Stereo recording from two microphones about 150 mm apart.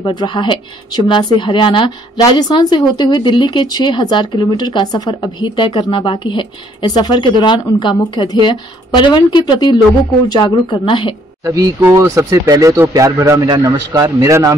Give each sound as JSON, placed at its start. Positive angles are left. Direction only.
{"t": 0.0, "sound": "a woman's voice", "side_deg": 30}
{"t": 11.4, "sound": "speech", "side_deg": -20}